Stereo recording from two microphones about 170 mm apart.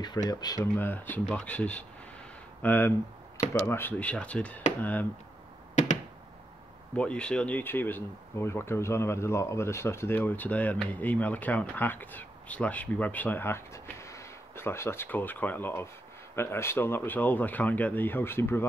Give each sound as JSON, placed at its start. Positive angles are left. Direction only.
{"t": 0.3, "sound": "speech", "side_deg": 25}
{"t": 5.8, "sound": "a sound", "side_deg": 45}
{"t": 7.0, "sound": "speech", "side_deg": 5}